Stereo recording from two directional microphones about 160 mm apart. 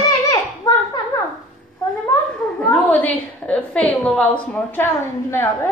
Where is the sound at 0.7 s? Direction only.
20° left (ahead or behind).